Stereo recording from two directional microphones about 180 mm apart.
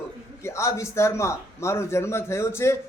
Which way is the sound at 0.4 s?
15° left (ahead or behind).